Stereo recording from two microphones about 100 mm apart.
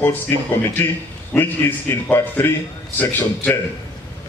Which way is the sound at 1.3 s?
5° left (ahead or behind).